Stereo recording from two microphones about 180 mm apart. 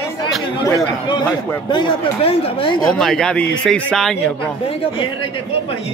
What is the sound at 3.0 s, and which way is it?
Speech, 5° left (ahead or behind).